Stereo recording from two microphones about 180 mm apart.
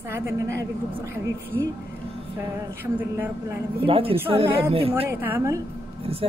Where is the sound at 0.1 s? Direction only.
15° right (ahead or behind).